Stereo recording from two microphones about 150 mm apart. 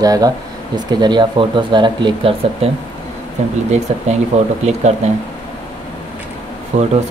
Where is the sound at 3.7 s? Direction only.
50° right (ahead or behind).